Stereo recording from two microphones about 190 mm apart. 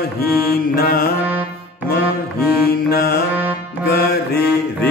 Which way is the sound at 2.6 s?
55° left (ahead or behind).